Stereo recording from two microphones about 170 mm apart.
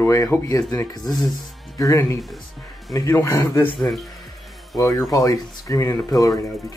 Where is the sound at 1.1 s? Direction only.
Centre (ahead or behind).